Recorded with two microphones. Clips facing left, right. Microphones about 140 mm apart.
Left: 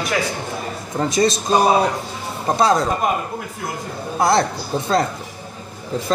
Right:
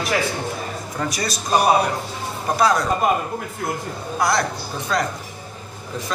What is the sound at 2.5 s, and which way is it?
Speech, 25° left (ahead or behind).